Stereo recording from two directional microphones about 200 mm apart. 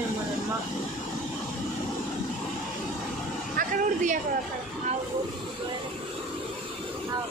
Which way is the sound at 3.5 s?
40° right (ahead or behind).